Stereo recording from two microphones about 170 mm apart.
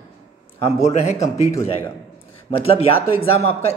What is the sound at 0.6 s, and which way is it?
Speech, 40° left (ahead or behind).